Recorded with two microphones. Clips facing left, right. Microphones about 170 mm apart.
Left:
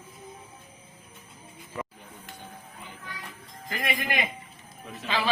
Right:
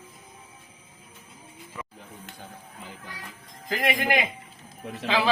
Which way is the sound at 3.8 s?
80° right.